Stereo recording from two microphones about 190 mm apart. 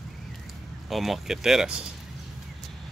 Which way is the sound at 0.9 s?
Centre (ahead or behind).